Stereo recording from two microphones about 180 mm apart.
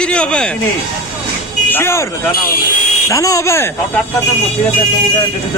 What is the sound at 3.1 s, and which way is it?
Speech, 20° left (ahead or behind).